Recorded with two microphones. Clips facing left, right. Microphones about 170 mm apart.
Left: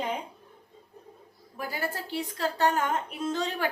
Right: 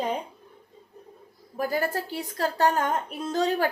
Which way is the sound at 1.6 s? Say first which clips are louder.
Right 7 dB; 45° right (ahead or behind).